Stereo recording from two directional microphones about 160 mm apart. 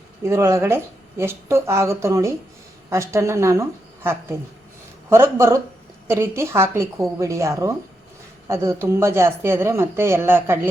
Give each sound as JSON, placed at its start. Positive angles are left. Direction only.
{"t": 0.2, "sound": "speech", "side_deg": -15}